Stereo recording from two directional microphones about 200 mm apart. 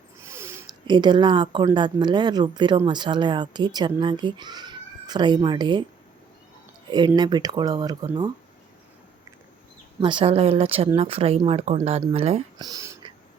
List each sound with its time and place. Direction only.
0.2 s speech: 15° right (ahead or behind)
7.2 s speech: 20° right (ahead or behind)
10.0 s speech: 25° right (ahead or behind)
12.5 s a sound: 20° right (ahead or behind)